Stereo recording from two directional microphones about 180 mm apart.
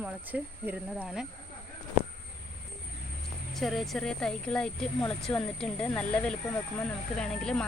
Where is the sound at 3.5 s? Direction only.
Centre (ahead or behind).